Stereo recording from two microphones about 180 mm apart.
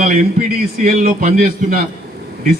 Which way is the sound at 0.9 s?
50° right (ahead or behind).